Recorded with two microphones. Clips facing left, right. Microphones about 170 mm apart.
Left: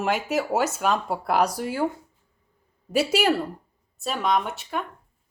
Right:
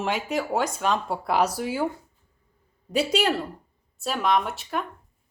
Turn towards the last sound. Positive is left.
turn(degrees=0)  # may be behind; listen again after turning